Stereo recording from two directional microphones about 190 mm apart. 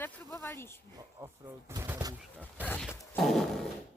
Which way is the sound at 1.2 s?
15° right (ahead or behind).